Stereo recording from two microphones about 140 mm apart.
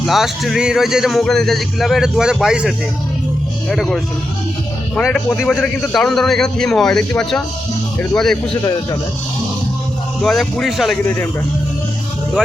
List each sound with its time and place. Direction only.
0.0 s speech: centre (ahead or behind)
5.4 s speech: centre (ahead or behind)
10.2 s speech: 5° left (ahead or behind)
11.0 s speech: 15° left (ahead or behind)